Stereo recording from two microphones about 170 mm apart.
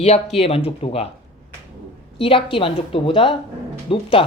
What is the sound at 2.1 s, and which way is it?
Speech, 30° left (ahead or behind).